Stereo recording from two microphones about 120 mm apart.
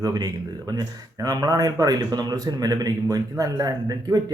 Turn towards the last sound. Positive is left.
turn(degrees=-30)  # may be behind; listen again after turning